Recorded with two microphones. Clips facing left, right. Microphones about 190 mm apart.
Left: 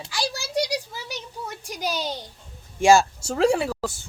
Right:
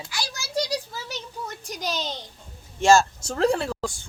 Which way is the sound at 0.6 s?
10° left (ahead or behind).